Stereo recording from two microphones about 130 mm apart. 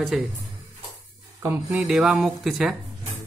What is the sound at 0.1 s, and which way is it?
Speech, 5° right (ahead or behind).